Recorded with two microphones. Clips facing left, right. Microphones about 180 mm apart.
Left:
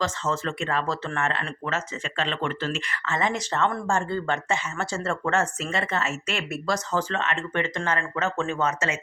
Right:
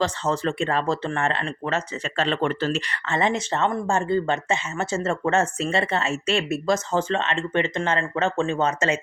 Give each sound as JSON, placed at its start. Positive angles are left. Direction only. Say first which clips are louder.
{"t": 0.0, "sound": "speech", "louder": "right 4 dB", "side_deg": -30}
{"t": 2.1, "sound": "speech", "louder": "right 5 dB", "side_deg": -40}